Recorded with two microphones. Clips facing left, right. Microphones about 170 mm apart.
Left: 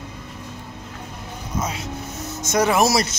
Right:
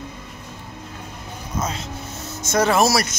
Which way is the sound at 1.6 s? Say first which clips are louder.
Even; 10° left (ahead or behind).